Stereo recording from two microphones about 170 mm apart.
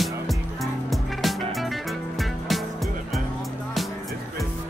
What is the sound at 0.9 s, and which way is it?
Music, centre (ahead or behind).